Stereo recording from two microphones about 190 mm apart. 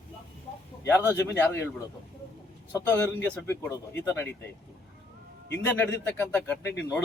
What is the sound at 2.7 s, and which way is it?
Speech, 15° left (ahead or behind).